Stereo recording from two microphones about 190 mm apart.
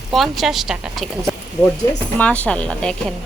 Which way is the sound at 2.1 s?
10° left (ahead or behind).